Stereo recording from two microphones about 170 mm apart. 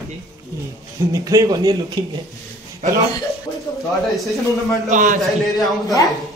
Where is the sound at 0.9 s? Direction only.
20° right (ahead or behind).